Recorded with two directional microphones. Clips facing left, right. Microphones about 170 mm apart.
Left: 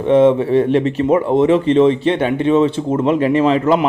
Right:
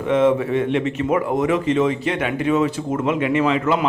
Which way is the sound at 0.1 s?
30° left (ahead or behind).